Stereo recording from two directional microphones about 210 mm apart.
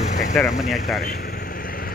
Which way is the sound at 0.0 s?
35° left (ahead or behind).